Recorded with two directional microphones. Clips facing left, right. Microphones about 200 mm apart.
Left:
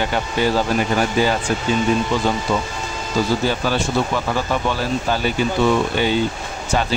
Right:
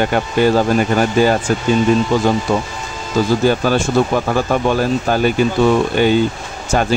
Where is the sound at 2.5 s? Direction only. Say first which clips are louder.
Right 3 dB; 50° right (ahead or behind).